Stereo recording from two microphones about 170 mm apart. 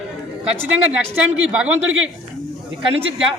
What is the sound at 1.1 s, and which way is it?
Speech, 5° right (ahead or behind).